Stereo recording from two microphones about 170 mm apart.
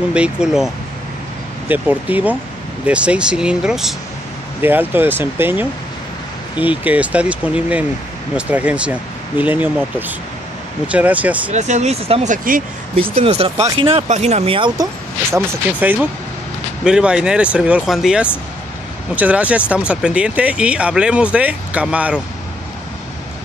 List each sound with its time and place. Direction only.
0.1 s speech: 5° right (ahead or behind)
1.7 s speech: 10° right (ahead or behind)
11.5 s speech: 45° right (ahead or behind)
12.9 s speech: 35° right (ahead or behind)
15.3 s speech: 10° right (ahead or behind)